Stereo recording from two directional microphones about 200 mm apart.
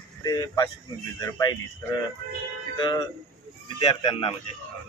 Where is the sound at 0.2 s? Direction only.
20° left (ahead or behind).